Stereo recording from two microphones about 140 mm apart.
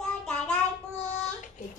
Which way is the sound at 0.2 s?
5° left (ahead or behind).